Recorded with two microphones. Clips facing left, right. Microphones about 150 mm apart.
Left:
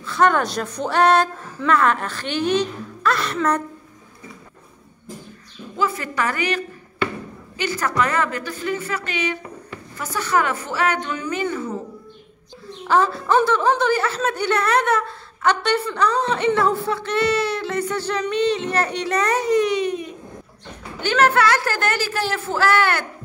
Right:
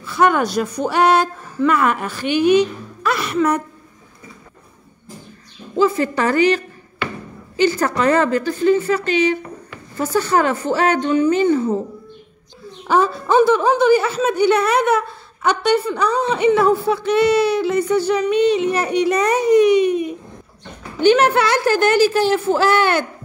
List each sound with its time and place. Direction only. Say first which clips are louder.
0.0 s speech: right 2 dB; 10° right (ahead or behind)
5.8 s a woman's voice: right 7 dB; 30° right (ahead or behind)
12.8 s a woman's voice: right 2 dB; 15° right (ahead or behind)